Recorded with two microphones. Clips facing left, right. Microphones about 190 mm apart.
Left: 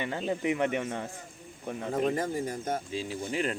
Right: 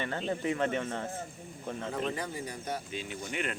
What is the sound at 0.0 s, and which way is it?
A man's voice, 15° left (ahead or behind).